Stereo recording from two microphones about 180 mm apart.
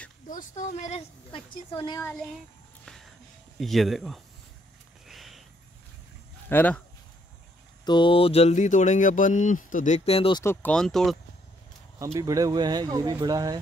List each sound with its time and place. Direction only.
0.3 s speech: 45° left (ahead or behind); by 2.0 s 25° left (ahead or behind)
3.5 s speech: centre (ahead or behind)
5.0 s a sound: centre (ahead or behind)
6.5 s speech: 10° left (ahead or behind)
7.8 s speech: 25° left (ahead or behind)
10.4 s speech: 10° left (ahead or behind)
12.2 s speech: 20° right (ahead or behind)